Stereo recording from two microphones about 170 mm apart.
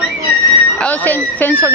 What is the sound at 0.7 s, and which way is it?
Speech, 10° left (ahead or behind).